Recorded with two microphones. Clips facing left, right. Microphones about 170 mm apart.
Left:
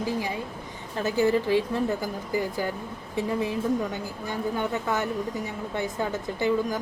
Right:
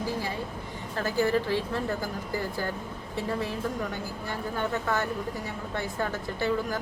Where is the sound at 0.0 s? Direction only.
15° left (ahead or behind).